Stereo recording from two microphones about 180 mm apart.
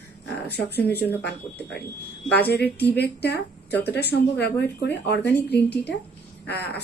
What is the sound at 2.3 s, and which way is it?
A woman's voice, 65° left (ahead or behind).